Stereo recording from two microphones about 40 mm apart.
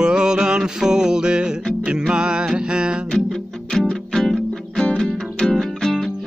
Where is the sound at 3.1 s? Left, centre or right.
Centre.